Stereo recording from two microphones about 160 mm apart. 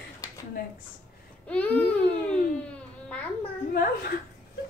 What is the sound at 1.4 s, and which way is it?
Babbling, 10° left (ahead or behind).